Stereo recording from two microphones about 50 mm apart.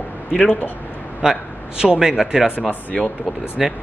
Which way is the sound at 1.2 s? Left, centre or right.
Centre.